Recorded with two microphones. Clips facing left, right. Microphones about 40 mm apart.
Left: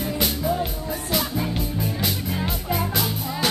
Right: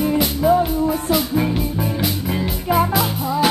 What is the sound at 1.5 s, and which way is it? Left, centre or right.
Music, centre.